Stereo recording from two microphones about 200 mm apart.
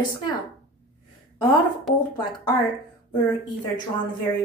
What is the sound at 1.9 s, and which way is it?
Speech, centre (ahead or behind).